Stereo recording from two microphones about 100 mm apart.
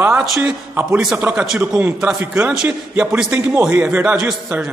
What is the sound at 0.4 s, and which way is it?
A man's voice, 20° right (ahead or behind).